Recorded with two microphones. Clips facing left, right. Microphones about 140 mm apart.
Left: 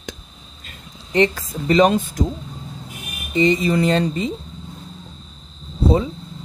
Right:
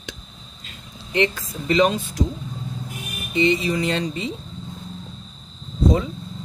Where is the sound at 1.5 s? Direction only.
45° left (ahead or behind).